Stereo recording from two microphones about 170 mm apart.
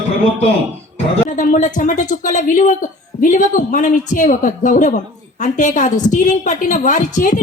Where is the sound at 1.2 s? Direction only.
50° left (ahead or behind).